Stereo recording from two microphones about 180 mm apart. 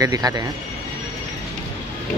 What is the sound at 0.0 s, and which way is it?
Speech, 20° right (ahead or behind).